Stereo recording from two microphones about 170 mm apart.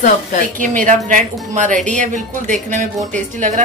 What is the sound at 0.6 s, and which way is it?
A woman's voice, 50° right (ahead or behind).